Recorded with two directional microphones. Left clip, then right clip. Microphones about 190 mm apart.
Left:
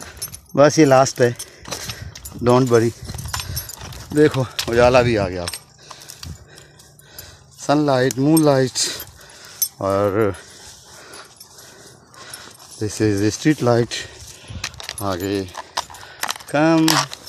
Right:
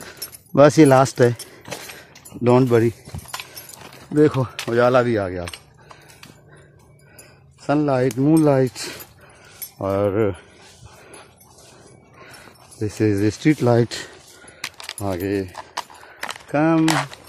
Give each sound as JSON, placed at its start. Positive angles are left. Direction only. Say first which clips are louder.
{"t": 0.6, "sound": "speech", "louder": "even", "side_deg": -25}
{"t": 2.0, "sound": "a sound", "louder": "even", "side_deg": -10}
{"t": 4.1, "sound": "speech", "louder": "left 1 dB", "side_deg": -5}
{"t": 4.6, "sound": "speech", "louder": "left 3 dB", "side_deg": 10}
{"t": 7.6, "sound": "speech", "louder": "left 2 dB", "side_deg": 0}
{"t": 12.8, "sound": "speech", "louder": "left 1 dB", "side_deg": -5}
{"t": 14.6, "sound": "keys jangling", "louder": "left 2 dB", "side_deg": 35}
{"t": 15.0, "sound": "speech", "louder": "left 2 dB", "side_deg": -5}
{"t": 15.5, "sound": "keys jangling", "louder": "left 4 dB", "side_deg": 45}
{"t": 16.5, "sound": "speech", "louder": "left 2 dB", "side_deg": 0}
{"t": 16.8, "sound": "speech", "louder": "left 2 dB", "side_deg": 45}